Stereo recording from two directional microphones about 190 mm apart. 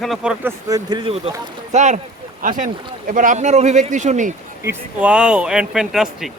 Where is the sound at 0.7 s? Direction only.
25° right (ahead or behind); by 4.4 s 40° right (ahead or behind).